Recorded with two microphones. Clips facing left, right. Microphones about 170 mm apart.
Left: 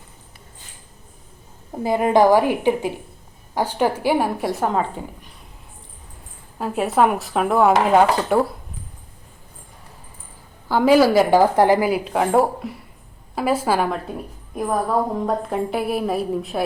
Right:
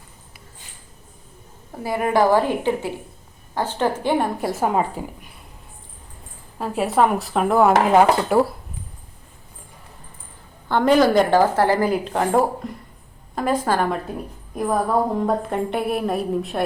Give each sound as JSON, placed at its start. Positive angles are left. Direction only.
{"t": 1.7, "sound": "a woman's voice", "side_deg": 20}
{"t": 6.6, "sound": "a woman's voice", "side_deg": 0}
{"t": 10.7, "sound": "a woman's voice", "side_deg": 5}